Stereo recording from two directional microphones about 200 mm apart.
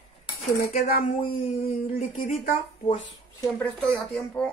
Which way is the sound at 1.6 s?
30° left (ahead or behind).